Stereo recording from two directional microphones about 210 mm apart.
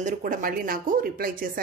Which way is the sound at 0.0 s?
40° right (ahead or behind).